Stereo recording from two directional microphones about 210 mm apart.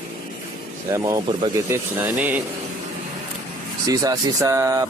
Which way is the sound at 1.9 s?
10° right (ahead or behind).